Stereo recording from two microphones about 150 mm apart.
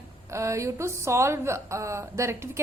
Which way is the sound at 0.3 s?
20° right (ahead or behind).